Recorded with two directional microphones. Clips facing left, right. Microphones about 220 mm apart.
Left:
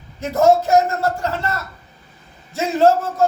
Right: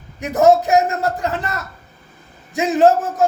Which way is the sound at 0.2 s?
15° right (ahead or behind).